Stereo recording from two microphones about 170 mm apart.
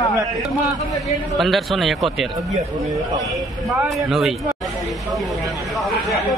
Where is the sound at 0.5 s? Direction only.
Centre (ahead or behind).